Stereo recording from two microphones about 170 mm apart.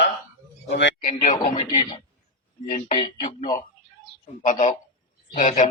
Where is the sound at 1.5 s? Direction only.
30° left (ahead or behind).